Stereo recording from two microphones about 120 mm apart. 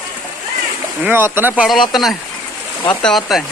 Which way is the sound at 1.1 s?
20° right (ahead or behind).